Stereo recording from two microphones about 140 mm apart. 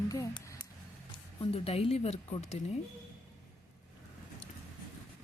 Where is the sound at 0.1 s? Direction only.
20° left (ahead or behind).